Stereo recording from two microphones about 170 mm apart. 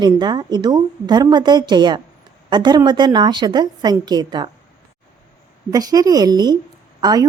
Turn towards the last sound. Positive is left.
turn(degrees=-25)  # may be behind; listen again after turning